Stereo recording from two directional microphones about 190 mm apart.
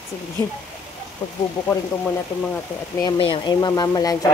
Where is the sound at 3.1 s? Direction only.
25° left (ahead or behind).